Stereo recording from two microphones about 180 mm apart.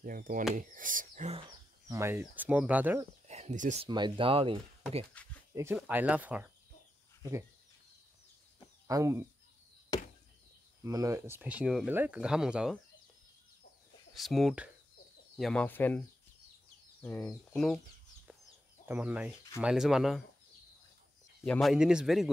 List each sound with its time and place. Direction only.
0.0 s speech: 50° right (ahead or behind)
1.9 s speech: 15° right (ahead or behind)
3.3 s a sound: 40° right (ahead or behind)
3.8 s speech: 25° right (ahead or behind)
5.2 s speech: 10° left (ahead or behind)
5.5 s speech: 15° right (ahead or behind)
8.8 s speech: 20° right (ahead or behind)
10.8 s speech: 20° right (ahead or behind)
14.1 s a man's voice: centre (ahead or behind)
17.0 s speech: 10° left (ahead or behind)
18.9 s a man's voice: 10° right (ahead or behind)
21.5 s a man's voice: centre (ahead or behind)